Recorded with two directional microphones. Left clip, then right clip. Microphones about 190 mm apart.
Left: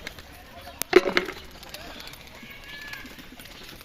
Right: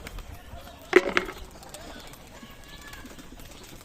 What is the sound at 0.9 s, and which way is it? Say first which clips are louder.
Wood: left 1 dB; 25° left (ahead or behind).